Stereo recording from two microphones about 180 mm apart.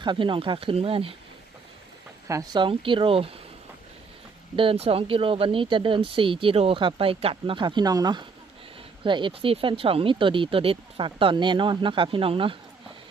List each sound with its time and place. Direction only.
0.0 s speech: 25° right (ahead or behind)
2.2 s speech: 20° right (ahead or behind)
4.5 s speech: 30° right (ahead or behind)